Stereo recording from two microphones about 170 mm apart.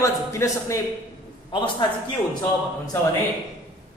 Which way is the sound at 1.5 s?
30° left (ahead or behind).